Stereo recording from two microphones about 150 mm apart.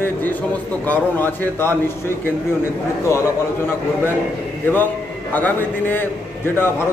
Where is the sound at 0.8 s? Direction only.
15° left (ahead or behind).